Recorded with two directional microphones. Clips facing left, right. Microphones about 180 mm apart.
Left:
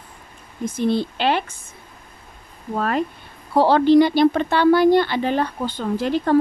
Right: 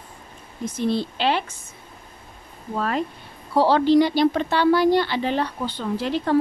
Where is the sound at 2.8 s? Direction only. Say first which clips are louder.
Left 3 dB; 55° left (ahead or behind).